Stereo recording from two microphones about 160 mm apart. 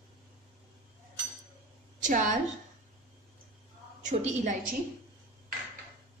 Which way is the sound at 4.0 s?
50° right (ahead or behind).